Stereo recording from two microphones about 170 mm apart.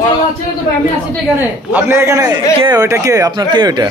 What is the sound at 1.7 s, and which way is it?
A man's voice, 10° right (ahead or behind).